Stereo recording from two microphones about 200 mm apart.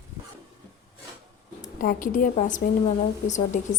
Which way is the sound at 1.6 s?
40° left (ahead or behind).